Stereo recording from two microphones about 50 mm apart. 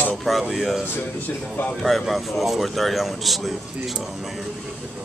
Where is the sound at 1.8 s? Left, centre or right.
Centre.